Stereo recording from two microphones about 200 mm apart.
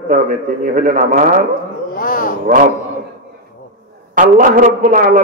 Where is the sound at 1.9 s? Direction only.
45° left (ahead or behind).